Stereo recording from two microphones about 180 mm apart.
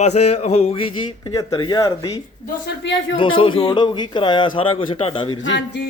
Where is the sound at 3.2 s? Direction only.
30° left (ahead or behind).